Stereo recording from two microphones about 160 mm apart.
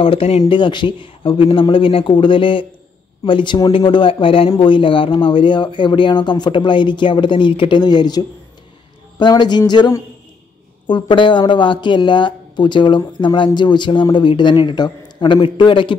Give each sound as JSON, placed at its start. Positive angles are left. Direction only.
{"t": 0.0, "sound": "speech", "side_deg": 35}